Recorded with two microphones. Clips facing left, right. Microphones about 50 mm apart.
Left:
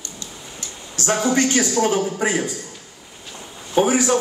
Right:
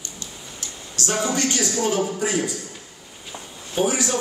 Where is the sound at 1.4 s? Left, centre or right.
Left.